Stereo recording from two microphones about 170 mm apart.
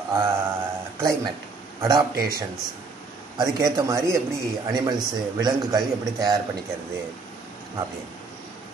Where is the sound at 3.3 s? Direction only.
25° right (ahead or behind).